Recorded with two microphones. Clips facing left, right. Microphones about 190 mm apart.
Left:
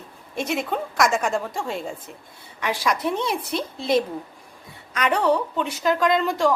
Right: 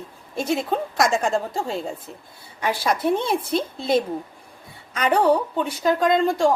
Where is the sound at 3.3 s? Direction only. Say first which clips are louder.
Right 3 dB; 25° right (ahead or behind).